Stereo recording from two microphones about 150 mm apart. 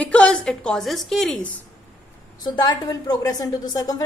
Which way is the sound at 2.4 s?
30° left (ahead or behind).